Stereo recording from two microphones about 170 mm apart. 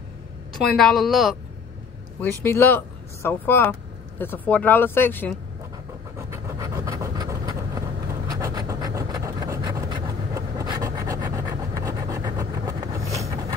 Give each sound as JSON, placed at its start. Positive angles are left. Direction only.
{"t": 0.5, "sound": "a woman's voice", "side_deg": 0}
{"t": 2.4, "sound": "speech", "side_deg": 15}
{"t": 6.1, "sound": "vehicle", "side_deg": -15}